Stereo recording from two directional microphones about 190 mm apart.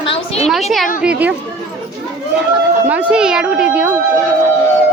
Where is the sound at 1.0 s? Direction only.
5° right (ahead or behind).